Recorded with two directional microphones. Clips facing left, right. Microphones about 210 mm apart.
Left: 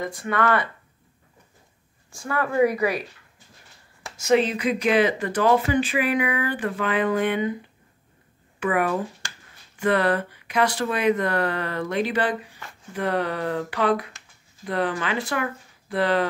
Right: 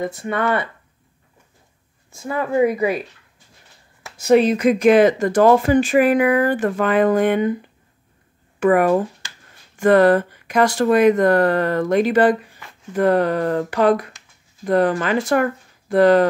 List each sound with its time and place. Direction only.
0.0 s speech: 25° right (ahead or behind)
2.1 s speech: 20° right (ahead or behind)
4.4 s speech: 45° right (ahead or behind)
8.5 s speech: 45° right (ahead or behind)